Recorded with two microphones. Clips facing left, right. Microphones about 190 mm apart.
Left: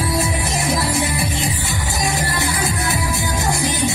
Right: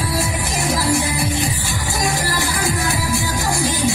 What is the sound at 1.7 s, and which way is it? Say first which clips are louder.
Music: right 1 dB; 20° left (ahead or behind).